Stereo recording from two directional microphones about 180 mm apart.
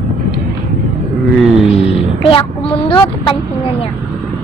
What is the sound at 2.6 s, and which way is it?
Speech, 30° left (ahead or behind).